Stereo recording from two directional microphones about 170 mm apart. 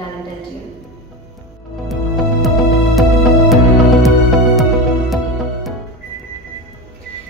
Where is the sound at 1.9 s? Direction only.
Centre (ahead or behind).